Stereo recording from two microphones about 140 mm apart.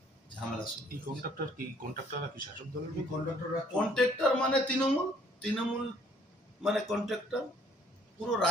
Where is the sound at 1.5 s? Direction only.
85° right.